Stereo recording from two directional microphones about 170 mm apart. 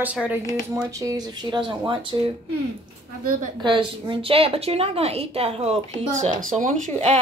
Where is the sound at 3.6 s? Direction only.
30° right (ahead or behind).